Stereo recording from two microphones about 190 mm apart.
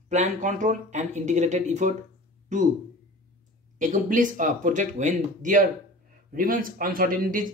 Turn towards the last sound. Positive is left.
turn(degrees=-45)  # may be behind; listen again after turning